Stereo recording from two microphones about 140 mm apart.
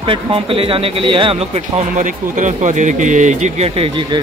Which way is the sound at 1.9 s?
65° right (ahead or behind).